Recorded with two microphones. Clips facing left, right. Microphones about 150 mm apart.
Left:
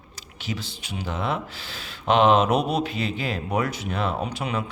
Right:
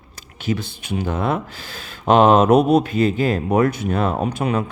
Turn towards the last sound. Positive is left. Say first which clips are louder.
# right 7 dB
turn(degrees=-50)  # may be behind; listen again after turning